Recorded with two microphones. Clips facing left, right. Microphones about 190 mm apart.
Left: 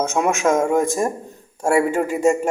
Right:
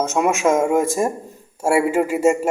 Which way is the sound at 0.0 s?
Centre (ahead or behind).